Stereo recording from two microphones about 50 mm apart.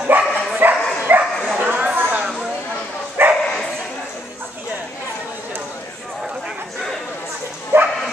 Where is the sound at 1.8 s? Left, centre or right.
Right.